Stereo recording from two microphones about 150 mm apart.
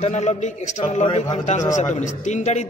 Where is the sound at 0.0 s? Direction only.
50° left (ahead or behind).